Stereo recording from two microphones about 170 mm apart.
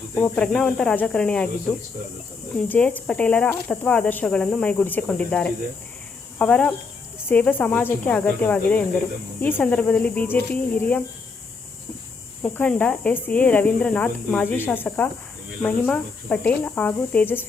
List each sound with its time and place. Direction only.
0.2 s speech: 5° left (ahead or behind)
2.6 s speech: 10° left (ahead or behind)
12.4 s speech: 10° left (ahead or behind)